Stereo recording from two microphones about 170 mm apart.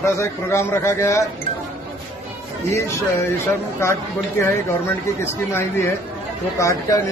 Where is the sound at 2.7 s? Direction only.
15° left (ahead or behind).